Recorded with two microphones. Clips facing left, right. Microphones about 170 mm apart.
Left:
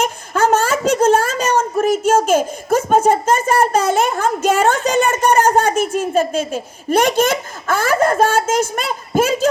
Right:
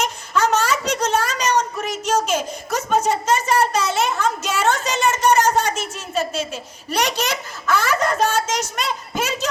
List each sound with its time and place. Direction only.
0.0 s a child's voice: 50° left (ahead or behind)